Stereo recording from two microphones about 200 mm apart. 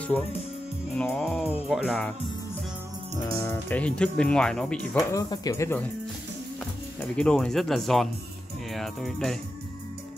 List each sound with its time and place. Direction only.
0.9 s speech: 5° left (ahead or behind)
3.4 s speech: 10° left (ahead or behind)
5.1 s speech: 20° left (ahead or behind)
7.0 s speech: 5° left (ahead or behind)